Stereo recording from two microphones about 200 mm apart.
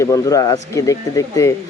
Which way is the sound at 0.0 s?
15° left (ahead or behind).